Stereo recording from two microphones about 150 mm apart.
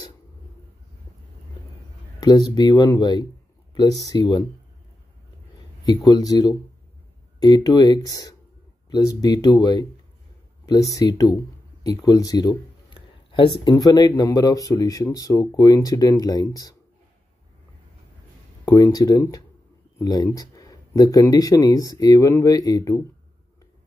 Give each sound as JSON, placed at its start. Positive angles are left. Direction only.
{"t": 2.1, "sound": "speech", "side_deg": 25}
{"t": 6.0, "sound": "speech", "side_deg": 25}
{"t": 18.7, "sound": "speech", "side_deg": 25}